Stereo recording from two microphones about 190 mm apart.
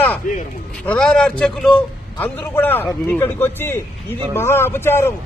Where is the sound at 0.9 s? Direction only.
5° left (ahead or behind).